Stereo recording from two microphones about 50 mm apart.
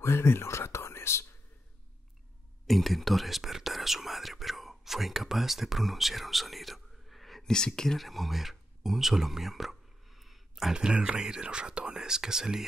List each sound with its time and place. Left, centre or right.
0.0 s whispering: left
2.6 s whispering: centre
7.5 s speech: centre